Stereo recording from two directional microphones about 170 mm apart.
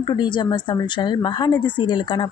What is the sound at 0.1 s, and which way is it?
Speech, 25° left (ahead or behind).